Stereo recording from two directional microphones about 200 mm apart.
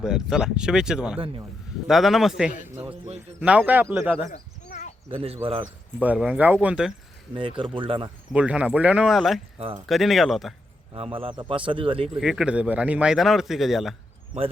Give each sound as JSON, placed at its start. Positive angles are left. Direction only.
{"t": 0.0, "sound": "speech", "side_deg": -5}
{"t": 4.3, "sound": "a sound", "side_deg": 45}
{"t": 5.1, "sound": "speech", "side_deg": -30}
{"t": 6.0, "sound": "speech", "side_deg": -5}
{"t": 7.3, "sound": "speech", "side_deg": -25}
{"t": 8.3, "sound": "speech", "side_deg": -5}
{"t": 10.9, "sound": "speech", "side_deg": -30}
{"t": 12.0, "sound": "speech", "side_deg": 0}